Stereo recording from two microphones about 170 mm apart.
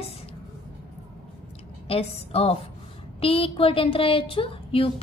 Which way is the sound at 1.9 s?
35° left (ahead or behind).